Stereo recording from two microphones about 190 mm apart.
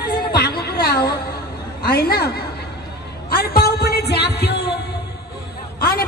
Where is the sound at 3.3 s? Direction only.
55° left (ahead or behind).